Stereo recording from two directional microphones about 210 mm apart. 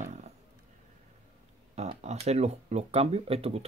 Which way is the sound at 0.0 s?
35° right (ahead or behind).